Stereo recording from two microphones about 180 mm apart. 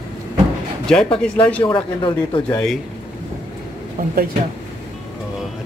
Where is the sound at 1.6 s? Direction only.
25° left (ahead or behind).